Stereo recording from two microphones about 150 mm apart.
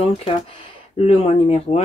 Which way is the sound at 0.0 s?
40° left (ahead or behind).